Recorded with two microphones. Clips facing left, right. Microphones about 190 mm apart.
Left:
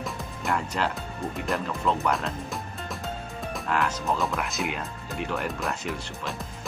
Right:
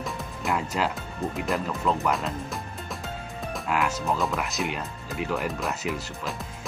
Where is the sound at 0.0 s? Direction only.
Centre (ahead or behind).